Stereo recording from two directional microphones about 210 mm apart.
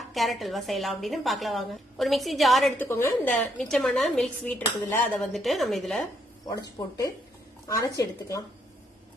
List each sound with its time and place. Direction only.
0.1 s speech: centre (ahead or behind)
2.8 s speech: 10° left (ahead or behind)
6.5 s a woman's voice: 20° left (ahead or behind)